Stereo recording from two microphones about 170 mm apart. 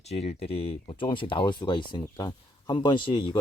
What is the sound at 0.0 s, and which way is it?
Speech, 40° left (ahead or behind).